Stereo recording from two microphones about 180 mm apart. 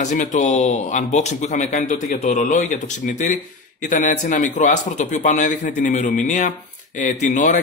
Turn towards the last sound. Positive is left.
turn(degrees=45)  # may be behind; listen again after turning